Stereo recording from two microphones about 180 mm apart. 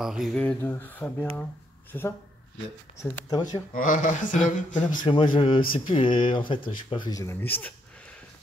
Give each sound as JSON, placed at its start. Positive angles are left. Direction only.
{"t": 0.0, "sound": "speech", "side_deg": 0}
{"t": 3.7, "sound": "speech", "side_deg": 45}
{"t": 4.9, "sound": "speech", "side_deg": 25}
{"t": 7.1, "sound": "speech", "side_deg": 15}